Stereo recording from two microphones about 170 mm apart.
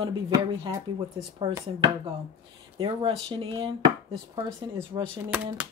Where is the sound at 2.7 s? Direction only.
30° right (ahead or behind).